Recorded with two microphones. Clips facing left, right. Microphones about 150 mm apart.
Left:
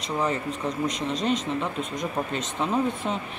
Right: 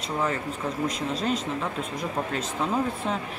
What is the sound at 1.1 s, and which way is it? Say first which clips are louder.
Speech: left 2 dB; 5° right (ahead or behind).